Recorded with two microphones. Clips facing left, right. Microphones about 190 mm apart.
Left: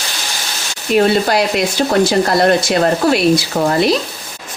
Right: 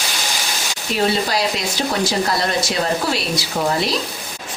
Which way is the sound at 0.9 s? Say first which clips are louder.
Left 7 dB; 60° left (ahead or behind).